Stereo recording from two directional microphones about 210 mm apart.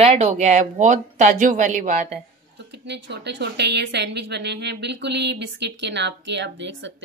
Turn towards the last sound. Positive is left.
turn(degrees=-55)  # may be behind; listen again after turning